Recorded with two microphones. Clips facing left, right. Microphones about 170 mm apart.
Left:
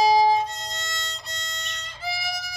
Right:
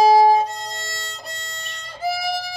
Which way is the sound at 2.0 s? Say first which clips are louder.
Right 9 dB; 50° right (ahead or behind).